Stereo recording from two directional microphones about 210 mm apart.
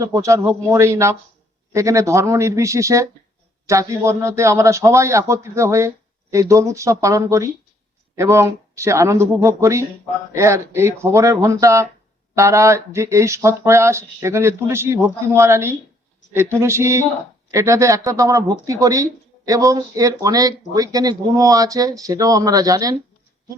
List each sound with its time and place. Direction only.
0.0 s speech: 15° right (ahead or behind)